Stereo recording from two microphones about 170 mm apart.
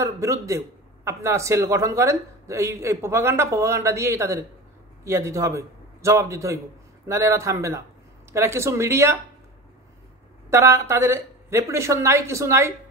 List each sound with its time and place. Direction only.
0.0 s a man's voice: 15° right (ahead or behind)
10.5 s speech: 15° right (ahead or behind)